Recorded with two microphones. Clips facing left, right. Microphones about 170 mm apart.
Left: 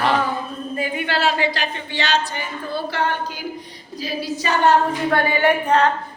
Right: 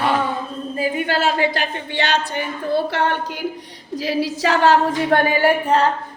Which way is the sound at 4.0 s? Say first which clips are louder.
Right 5 dB; 85° right.